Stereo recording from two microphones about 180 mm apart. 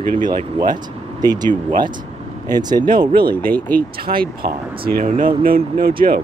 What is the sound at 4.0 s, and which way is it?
Speech, 55° right (ahead or behind).